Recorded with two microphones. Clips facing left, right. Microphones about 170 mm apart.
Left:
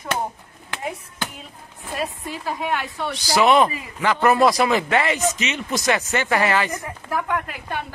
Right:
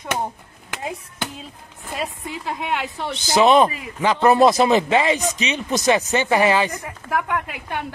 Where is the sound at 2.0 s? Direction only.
20° right (ahead or behind).